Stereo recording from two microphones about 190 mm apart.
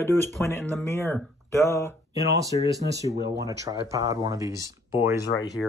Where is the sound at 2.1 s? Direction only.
15° right (ahead or behind).